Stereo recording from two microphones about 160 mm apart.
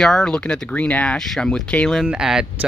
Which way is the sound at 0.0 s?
5° left (ahead or behind).